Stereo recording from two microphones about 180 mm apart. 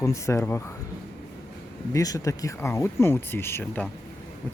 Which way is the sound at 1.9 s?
20° left (ahead or behind).